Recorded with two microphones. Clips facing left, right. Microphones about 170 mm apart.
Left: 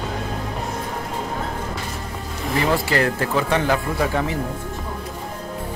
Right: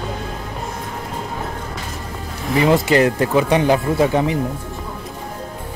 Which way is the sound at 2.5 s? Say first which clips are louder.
Right 6 dB; 20° right (ahead or behind).